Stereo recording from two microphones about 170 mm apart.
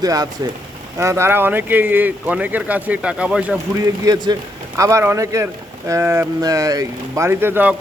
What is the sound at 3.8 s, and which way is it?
A man's voice, 20° right (ahead or behind).